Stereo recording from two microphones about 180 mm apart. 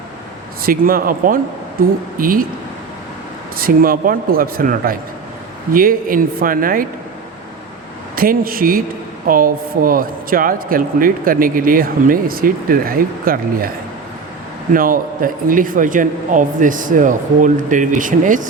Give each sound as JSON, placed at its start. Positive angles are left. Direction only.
{"t": 0.6, "sound": "speech", "side_deg": -55}
{"t": 3.6, "sound": "speech", "side_deg": -55}
{"t": 8.1, "sound": "speech", "side_deg": -55}
{"t": 14.7, "sound": "speech", "side_deg": -50}